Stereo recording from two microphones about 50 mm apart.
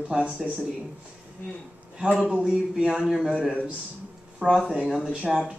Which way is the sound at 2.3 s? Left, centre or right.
Centre.